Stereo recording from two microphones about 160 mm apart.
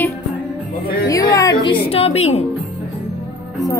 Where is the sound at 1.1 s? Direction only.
20° left (ahead or behind); by 2.5 s 40° left (ahead or behind).